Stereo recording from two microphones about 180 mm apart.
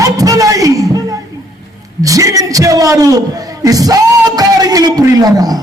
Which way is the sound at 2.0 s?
20° right (ahead or behind).